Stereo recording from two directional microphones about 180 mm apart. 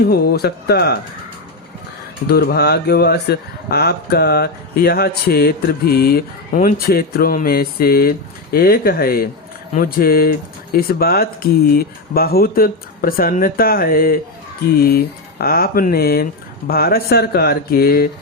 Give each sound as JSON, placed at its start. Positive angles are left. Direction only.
{"t": 0.0, "sound": "speech", "side_deg": 60}
{"t": 2.2, "sound": "speech", "side_deg": 60}